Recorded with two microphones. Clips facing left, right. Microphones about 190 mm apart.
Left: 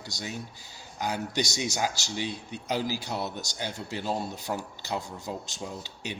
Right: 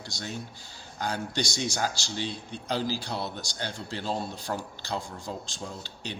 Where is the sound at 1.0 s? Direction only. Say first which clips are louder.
Left 1 dB; 15° left (ahead or behind).